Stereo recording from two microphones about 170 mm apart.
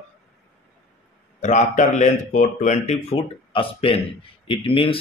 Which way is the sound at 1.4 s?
45° left (ahead or behind).